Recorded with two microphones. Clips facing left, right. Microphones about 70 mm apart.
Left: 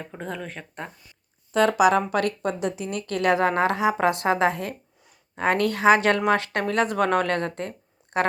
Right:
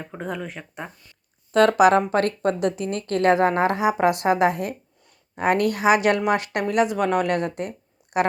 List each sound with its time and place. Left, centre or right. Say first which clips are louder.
0.0 s speech: right 3 dB; centre
1.5 s speech: right 3 dB; right; by 8.3 s centre